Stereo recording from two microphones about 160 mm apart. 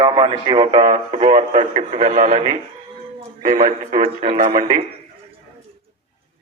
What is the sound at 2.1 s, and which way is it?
Speech, 50° right (ahead or behind).